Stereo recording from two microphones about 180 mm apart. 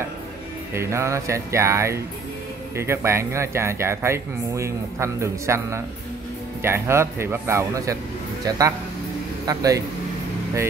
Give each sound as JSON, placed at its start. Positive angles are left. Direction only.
{"t": 0.7, "sound": "a man's voice", "side_deg": -15}